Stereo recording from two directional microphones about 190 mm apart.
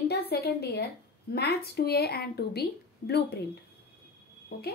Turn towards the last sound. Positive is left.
turn(degrees=55)  # may be behind; listen again after turning